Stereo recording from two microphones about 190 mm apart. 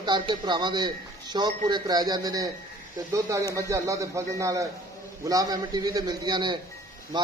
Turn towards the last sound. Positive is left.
turn(degrees=-25)  # may be behind; listen again after turning